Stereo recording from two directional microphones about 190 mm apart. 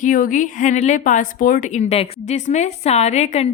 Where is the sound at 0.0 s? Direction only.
45° left (ahead or behind).